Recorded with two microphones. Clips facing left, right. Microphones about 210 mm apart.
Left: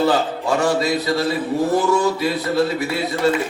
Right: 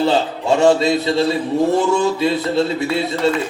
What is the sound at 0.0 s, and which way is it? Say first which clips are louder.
A man's voice: right 1 dB; 25° right (ahead or behind).